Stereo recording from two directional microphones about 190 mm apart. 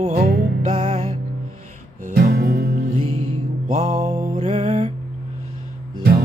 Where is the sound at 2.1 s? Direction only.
55° right (ahead or behind).